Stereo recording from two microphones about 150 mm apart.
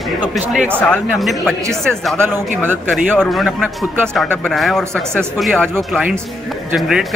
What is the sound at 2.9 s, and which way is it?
Speech, centre (ahead or behind).